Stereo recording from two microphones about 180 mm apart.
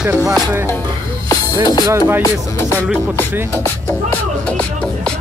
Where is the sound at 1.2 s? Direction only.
20° left (ahead or behind).